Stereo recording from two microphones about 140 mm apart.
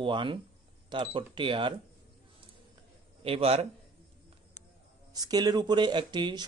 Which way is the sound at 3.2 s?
45° right (ahead or behind).